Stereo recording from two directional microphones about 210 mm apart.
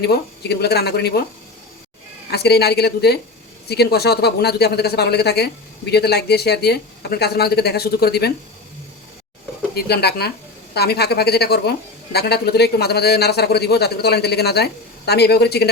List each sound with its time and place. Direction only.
0.0 s speech: 50° left (ahead or behind)
2.3 s speech: 50° left (ahead or behind)
9.7 s speech: 50° left (ahead or behind)